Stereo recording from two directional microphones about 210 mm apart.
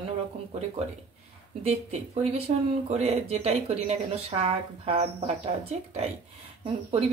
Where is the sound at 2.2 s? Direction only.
30° right (ahead or behind).